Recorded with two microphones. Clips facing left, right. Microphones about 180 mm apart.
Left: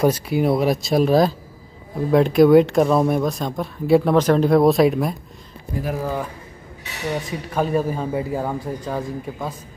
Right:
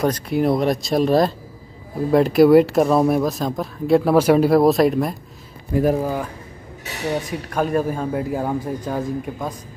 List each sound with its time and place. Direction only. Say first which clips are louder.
0.0 s speech: left 1 dB; 5° left (ahead or behind)
5.7 s speech: right 9 dB; 60° right (ahead or behind)
7.2 s speech: even; centre (ahead or behind)